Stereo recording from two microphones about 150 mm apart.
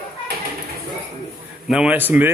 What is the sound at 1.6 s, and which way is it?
Speech, 5° right (ahead or behind).